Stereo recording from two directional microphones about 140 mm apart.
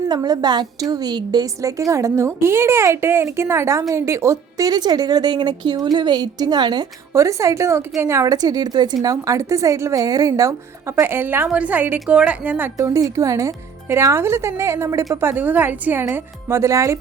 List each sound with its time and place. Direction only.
0.1 s a woman's voice: 30° right (ahead or behind); by 12.7 s 10° right (ahead or behind)
12.7 s a woman's voice: 25° right (ahead or behind)